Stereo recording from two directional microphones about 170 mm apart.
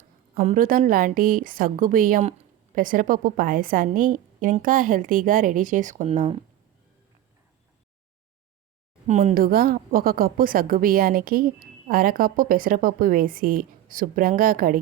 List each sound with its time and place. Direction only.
0.4 s a woman's voice: 50° right (ahead or behind)
9.0 s a woman's voice: 45° right (ahead or behind)